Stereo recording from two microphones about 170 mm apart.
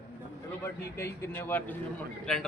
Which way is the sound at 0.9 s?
10° left (ahead or behind).